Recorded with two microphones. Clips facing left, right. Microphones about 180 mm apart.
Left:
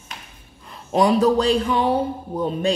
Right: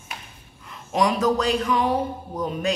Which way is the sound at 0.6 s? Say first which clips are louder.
Left 4 dB; 30° left (ahead or behind).